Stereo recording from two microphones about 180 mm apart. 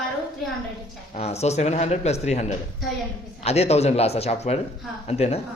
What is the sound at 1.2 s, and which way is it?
Speech, 35° left (ahead or behind).